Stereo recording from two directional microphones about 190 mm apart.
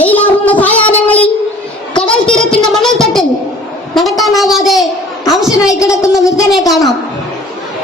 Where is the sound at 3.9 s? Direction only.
Centre (ahead or behind).